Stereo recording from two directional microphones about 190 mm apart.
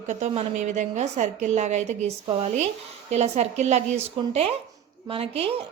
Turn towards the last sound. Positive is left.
turn(degrees=-30)  # may be behind; listen again after turning